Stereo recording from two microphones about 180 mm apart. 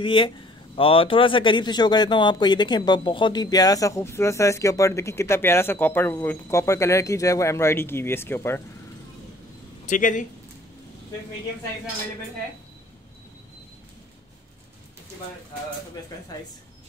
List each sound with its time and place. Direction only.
0.0 s speech: 25° left (ahead or behind)
9.8 s speech: 45° left (ahead or behind)